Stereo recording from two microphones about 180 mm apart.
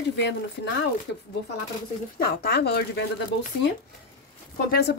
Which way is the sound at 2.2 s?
65° left (ahead or behind).